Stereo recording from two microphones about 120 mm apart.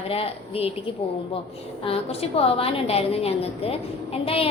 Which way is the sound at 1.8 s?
55° left (ahead or behind).